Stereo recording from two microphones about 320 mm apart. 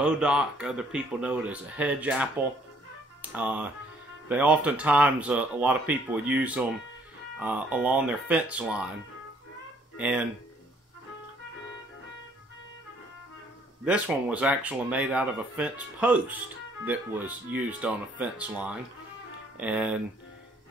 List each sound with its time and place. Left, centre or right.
0.0 s speech: centre
9.9 s speech: centre
13.8 s speech: centre